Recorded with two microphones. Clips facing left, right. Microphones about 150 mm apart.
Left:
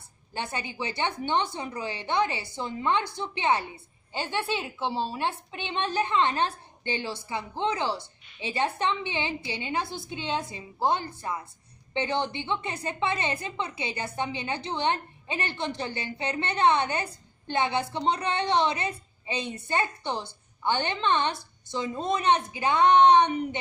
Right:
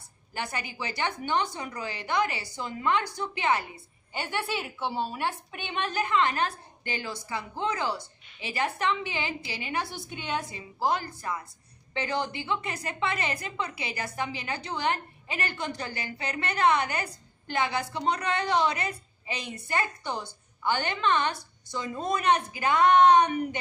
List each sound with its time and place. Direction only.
0.3 s a woman's voice: 25° left (ahead or behind)